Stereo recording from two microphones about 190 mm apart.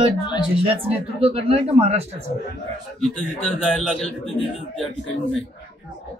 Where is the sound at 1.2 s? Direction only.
30° right (ahead or behind).